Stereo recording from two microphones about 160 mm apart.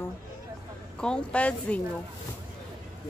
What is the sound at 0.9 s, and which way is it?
Speech, 5° left (ahead or behind).